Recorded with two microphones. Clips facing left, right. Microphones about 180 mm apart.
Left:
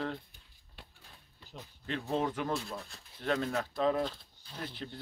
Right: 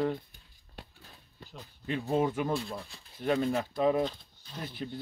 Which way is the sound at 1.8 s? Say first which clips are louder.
Right 4 dB; 10° right (ahead or behind).